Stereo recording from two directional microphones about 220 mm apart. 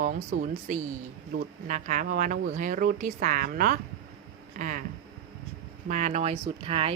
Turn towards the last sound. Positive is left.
turn(degrees=-25)  # may be behind; listen again after turning